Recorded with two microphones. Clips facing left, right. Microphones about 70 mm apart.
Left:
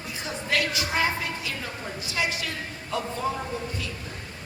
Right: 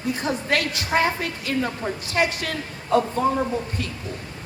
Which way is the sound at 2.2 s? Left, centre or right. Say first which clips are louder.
Right 6 dB; right.